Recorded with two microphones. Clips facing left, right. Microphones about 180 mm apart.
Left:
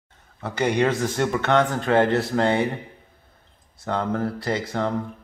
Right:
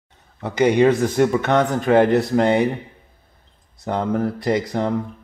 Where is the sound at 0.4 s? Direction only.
10° right (ahead or behind).